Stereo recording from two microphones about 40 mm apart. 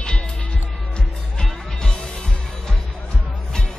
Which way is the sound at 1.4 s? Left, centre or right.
Centre.